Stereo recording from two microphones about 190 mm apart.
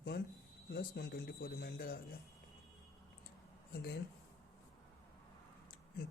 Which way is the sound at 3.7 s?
55° left (ahead or behind).